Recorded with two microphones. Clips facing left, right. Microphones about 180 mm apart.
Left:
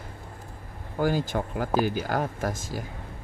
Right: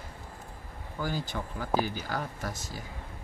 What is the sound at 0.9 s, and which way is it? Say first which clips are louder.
Speech: left 8 dB; 55° left (ahead or behind).